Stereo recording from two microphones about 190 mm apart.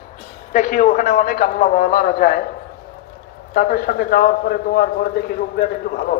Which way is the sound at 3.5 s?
50° left (ahead or behind).